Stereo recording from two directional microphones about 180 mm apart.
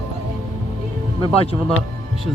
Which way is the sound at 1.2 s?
30° left (ahead or behind).